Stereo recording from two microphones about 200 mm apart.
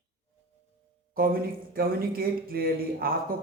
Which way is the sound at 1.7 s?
50° right (ahead or behind).